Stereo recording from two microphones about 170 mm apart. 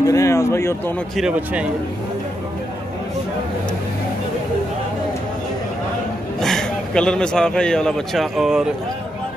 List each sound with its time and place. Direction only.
0.1 s speech: 15° left (ahead or behind)
1.1 s speech: 5° right (ahead or behind)
6.4 s a man's voice: 5° left (ahead or behind)